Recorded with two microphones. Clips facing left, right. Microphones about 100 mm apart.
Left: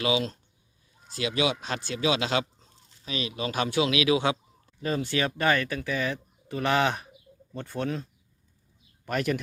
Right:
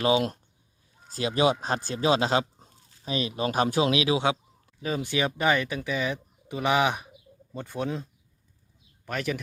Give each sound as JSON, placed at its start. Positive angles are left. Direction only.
{"t": 1.1, "sound": "speech", "side_deg": -40}
{"t": 4.6, "sound": "speech", "side_deg": -5}
{"t": 9.0, "sound": "speech", "side_deg": 0}